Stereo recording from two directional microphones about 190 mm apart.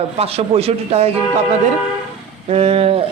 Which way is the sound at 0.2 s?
30° right (ahead or behind).